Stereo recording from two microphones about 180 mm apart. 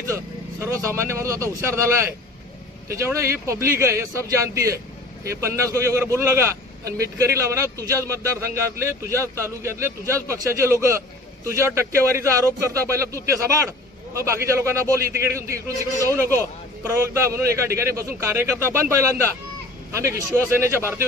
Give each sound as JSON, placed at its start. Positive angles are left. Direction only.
{"t": 0.1, "sound": "speech", "side_deg": -15}